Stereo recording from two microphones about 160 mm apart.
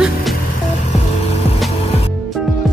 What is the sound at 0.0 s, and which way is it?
Vehicle, centre (ahead or behind).